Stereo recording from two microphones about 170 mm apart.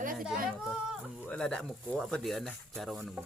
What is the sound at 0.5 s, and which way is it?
Speech, centre (ahead or behind).